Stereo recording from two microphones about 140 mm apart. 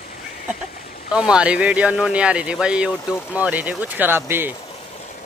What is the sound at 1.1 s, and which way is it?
Speech, 5° right (ahead or behind).